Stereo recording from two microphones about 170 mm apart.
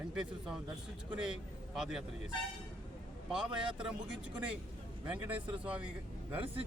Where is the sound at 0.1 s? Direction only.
5° right (ahead or behind).